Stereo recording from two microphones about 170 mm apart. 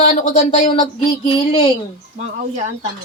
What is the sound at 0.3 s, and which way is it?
A woman's voice, 40° left (ahead or behind).